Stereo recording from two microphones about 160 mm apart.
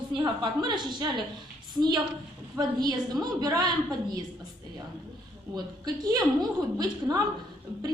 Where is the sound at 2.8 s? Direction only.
25° right (ahead or behind).